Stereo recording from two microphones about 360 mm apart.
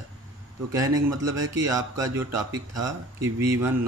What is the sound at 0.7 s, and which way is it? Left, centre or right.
A man's voice, centre.